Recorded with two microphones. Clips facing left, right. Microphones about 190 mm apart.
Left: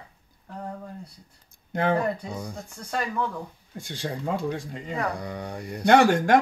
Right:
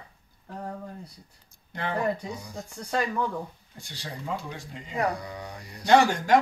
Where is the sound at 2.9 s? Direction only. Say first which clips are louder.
Right 1 dB; 5° right (ahead or behind).